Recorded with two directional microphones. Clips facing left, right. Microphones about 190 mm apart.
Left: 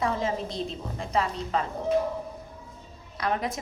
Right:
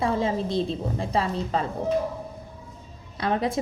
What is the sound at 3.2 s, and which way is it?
Speech, 30° right (ahead or behind).